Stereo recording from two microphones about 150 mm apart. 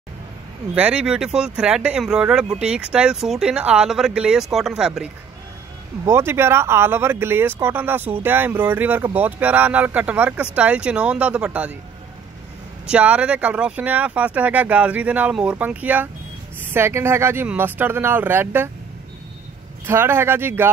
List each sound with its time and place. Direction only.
0.7 s speech: 5° right (ahead or behind)
6.0 s speech: 15° right (ahead or behind)
12.8 s speech: 10° right (ahead or behind)
19.9 s speech: 15° right (ahead or behind)